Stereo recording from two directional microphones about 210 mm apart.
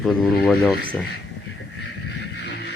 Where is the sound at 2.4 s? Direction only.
55° left (ahead or behind).